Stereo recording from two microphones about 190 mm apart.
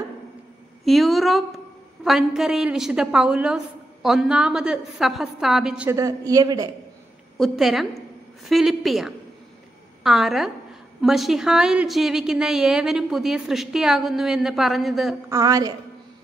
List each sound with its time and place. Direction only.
0.8 s a woman's voice: centre (ahead or behind)
5.9 s a man's voice: 20° right (ahead or behind)
7.3 s a woman's voice: centre (ahead or behind)
15.2 s a man's voice: 15° right (ahead or behind)